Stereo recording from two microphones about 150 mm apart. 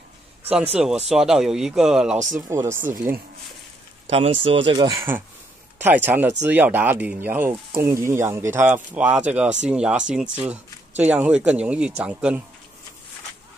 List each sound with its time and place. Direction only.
0.8 s speech: 5° right (ahead or behind)
2.1 s speech: 55° right (ahead or behind)
2.5 s speech: 20° right (ahead or behind)
4.1 s speech: 40° right (ahead or behind)
4.8 s speech: 20° right (ahead or behind)